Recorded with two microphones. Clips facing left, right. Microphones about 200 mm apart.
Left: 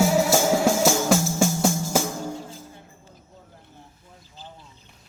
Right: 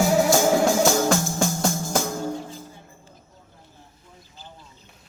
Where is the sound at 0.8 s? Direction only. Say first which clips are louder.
Even; 5° left (ahead or behind).